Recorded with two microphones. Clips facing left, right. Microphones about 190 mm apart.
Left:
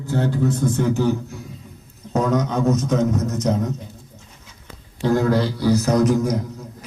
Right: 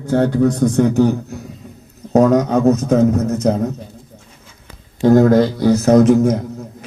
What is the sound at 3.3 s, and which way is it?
Speech, 35° right (ahead or behind).